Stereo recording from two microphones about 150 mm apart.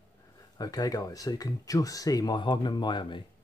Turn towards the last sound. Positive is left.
turn(degrees=30)  # may be behind; listen again after turning